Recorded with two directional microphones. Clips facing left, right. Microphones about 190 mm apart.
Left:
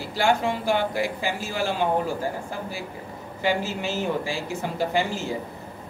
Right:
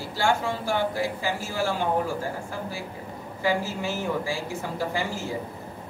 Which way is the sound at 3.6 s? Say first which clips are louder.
Left 1 dB; 70° left (ahead or behind).